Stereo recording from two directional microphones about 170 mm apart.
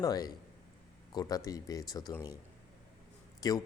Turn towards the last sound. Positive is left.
turn(degrees=20)  # may be behind; listen again after turning